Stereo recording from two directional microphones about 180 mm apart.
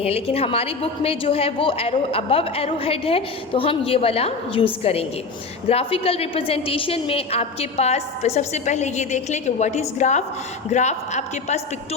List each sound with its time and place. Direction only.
0.0 s a woman's voice: 35° left (ahead or behind)